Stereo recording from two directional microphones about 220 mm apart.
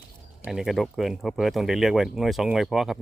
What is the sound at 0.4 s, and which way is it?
Speech, centre (ahead or behind).